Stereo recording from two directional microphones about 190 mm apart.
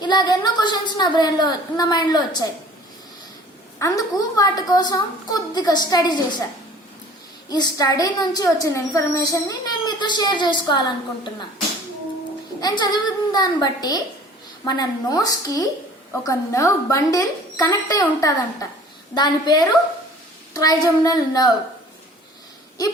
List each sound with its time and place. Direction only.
0.0 s a woman's voice: 20° left (ahead or behind)
3.8 s a woman's voice: 15° left (ahead or behind)
7.5 s a woman's voice: 20° left (ahead or behind)
12.5 s a woman's voice: 20° left (ahead or behind)